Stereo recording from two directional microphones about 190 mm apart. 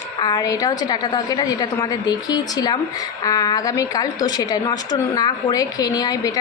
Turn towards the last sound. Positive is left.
turn(degrees=20)  # may be behind; listen again after turning